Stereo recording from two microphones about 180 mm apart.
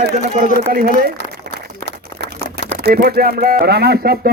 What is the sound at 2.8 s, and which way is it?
Speech, 60° right (ahead or behind).